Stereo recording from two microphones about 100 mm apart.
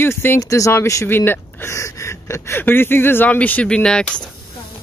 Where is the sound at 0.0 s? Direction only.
25° left (ahead or behind).